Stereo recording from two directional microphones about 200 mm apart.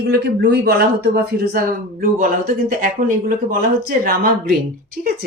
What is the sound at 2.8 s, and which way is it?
Speech, 45° right (ahead or behind).